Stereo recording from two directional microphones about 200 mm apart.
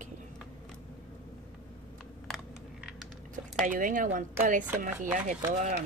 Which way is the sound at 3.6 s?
40° right (ahead or behind).